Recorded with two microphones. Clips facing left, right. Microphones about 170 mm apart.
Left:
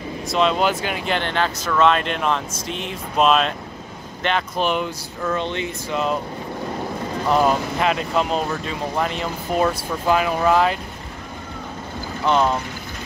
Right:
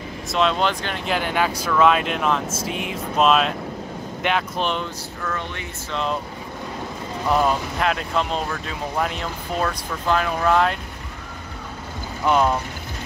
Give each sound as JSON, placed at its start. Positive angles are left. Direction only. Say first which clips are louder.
{"t": 0.3, "sound": "speech", "louder": "left 2 dB", "side_deg": 0}
{"t": 1.1, "sound": "speech", "louder": "right 2 dB", "side_deg": -10}
{"t": 4.6, "sound": "speech", "louder": "left 3 dB", "side_deg": 5}
{"t": 5.2, "sound": "speech", "louder": "left 7 dB", "side_deg": 20}
{"t": 5.9, "sound": "speech", "louder": "left 2 dB", "side_deg": 5}
{"t": 7.2, "sound": "speech", "louder": "left 2 dB", "side_deg": 0}
{"t": 12.3, "sound": "speech", "louder": "even", "side_deg": -5}